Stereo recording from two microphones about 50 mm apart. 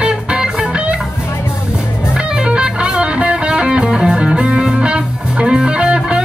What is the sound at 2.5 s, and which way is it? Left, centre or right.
Music, right.